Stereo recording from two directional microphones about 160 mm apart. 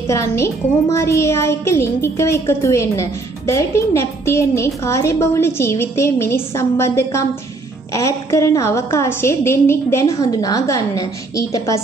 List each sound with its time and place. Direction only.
0.0 s a woman's voice: 20° left (ahead or behind)